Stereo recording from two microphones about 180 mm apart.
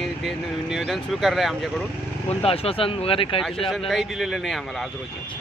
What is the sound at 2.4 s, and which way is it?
Speech, 30° left (ahead or behind).